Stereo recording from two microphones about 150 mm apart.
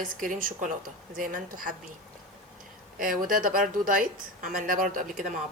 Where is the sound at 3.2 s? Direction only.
70° right (ahead or behind).